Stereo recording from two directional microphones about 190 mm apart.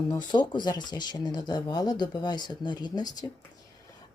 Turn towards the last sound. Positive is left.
turn(degrees=20)  # may be behind; listen again after turning